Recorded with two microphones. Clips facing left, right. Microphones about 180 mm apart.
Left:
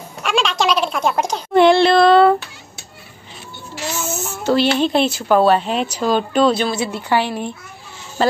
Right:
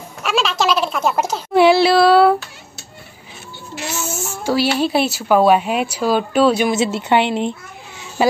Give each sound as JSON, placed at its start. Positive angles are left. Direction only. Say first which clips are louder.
{"t": 0.2, "sound": "a sound", "louder": "even", "side_deg": -5}
{"t": 4.1, "sound": "speech", "louder": "left 3 dB", "side_deg": -10}
{"t": 6.7, "sound": "a woman's voice", "louder": "right 3 dB", "side_deg": -20}
{"t": 8.2, "sound": "honk", "louder": "right 1 dB", "side_deg": -10}